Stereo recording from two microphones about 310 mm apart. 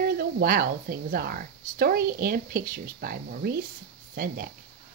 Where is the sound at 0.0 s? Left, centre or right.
Right.